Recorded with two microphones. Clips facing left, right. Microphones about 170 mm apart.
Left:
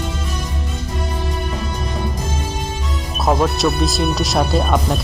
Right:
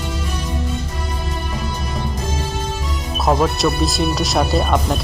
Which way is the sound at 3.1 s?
Centre (ahead or behind).